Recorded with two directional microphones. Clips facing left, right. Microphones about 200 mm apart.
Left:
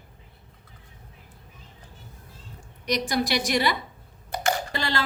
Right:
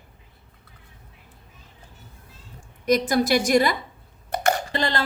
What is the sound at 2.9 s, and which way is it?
A woman's voice, 45° right (ahead or behind).